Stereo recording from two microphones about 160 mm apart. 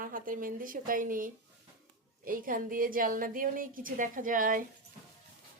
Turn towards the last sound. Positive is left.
turn(degrees=-55)  # may be behind; listen again after turning